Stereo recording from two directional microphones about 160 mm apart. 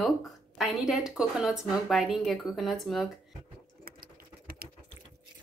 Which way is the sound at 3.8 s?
65° right (ahead or behind).